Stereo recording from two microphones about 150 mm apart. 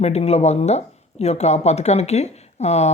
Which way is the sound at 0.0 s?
45° left (ahead or behind).